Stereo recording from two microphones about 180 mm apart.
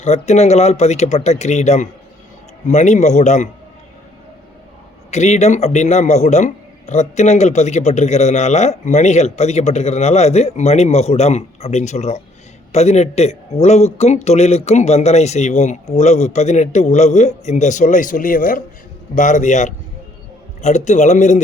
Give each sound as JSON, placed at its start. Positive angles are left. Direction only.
{"t": 0.0, "sound": "a man's voice", "side_deg": 40}
{"t": 5.1, "sound": "a man's voice", "side_deg": 40}